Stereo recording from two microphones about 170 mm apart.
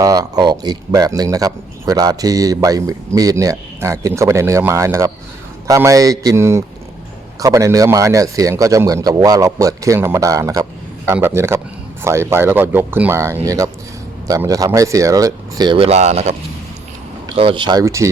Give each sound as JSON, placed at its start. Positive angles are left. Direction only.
{"t": 0.0, "sound": "speech", "side_deg": -20}
{"t": 17.3, "sound": "speech", "side_deg": -30}